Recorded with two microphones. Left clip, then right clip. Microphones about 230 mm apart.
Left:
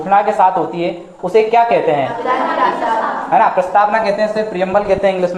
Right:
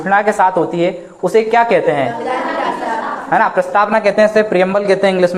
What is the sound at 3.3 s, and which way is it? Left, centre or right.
Speech, right.